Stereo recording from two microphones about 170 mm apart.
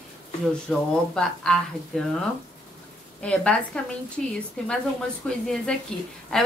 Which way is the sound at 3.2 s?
5° left (ahead or behind).